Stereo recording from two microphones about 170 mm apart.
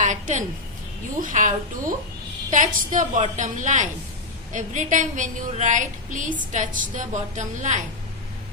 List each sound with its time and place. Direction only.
0.0 s a woman's voice: 45° right (ahead or behind)